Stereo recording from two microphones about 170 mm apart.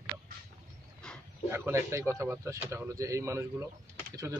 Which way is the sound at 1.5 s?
15° right (ahead or behind).